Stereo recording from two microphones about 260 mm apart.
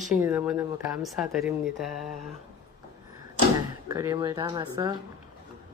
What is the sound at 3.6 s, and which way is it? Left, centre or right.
Speech, centre.